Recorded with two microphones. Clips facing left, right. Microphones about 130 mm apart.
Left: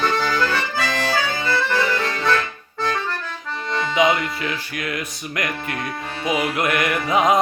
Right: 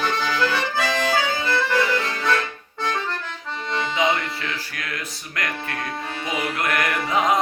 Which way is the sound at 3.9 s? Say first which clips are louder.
Left 5 dB; 15° left (ahead or behind).